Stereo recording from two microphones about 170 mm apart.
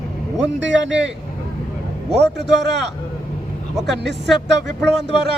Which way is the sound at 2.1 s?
85° right.